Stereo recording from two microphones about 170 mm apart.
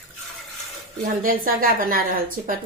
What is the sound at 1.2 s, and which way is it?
A woman's voice, 60° right (ahead or behind).